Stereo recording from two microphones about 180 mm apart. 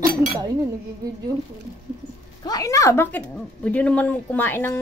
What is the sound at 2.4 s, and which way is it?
Speech, 20° left (ahead or behind).